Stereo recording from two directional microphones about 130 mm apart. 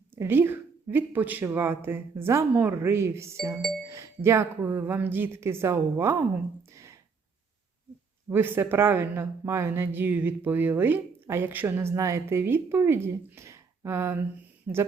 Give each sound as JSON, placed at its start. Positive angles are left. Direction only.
{"t": 0.2, "sound": "speech", "side_deg": -15}
{"t": 6.7, "sound": "a sound", "side_deg": -20}
{"t": 8.3, "sound": "speech", "side_deg": -15}